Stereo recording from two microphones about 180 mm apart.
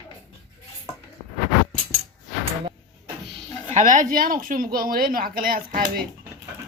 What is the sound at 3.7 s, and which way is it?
Speech, 45° right (ahead or behind).